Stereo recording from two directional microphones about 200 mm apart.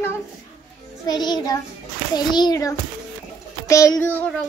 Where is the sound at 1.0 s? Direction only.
20° left (ahead or behind).